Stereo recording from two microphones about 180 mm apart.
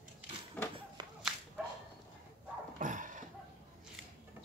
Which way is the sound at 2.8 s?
45° right (ahead or behind).